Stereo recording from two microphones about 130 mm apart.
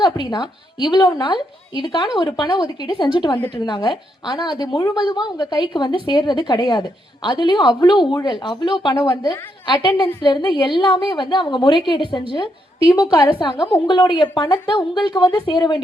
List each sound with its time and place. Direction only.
0.0 s a woman's voice: 35° left (ahead or behind)